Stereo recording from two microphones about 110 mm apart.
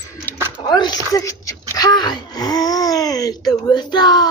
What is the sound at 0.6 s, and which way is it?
Speech, 40° left (ahead or behind).